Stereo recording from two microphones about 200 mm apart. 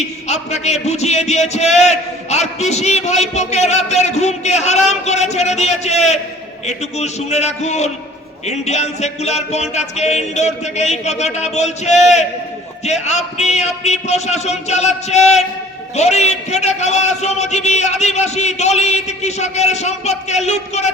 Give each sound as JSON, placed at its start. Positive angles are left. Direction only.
{"t": 0.3, "sound": "a man's voice", "side_deg": 35}